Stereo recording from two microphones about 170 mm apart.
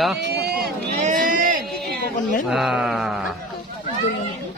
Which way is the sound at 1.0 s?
50° right (ahead or behind).